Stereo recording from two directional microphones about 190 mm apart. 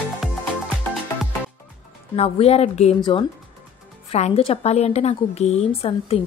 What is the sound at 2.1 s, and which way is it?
A woman's voice, 30° left (ahead or behind).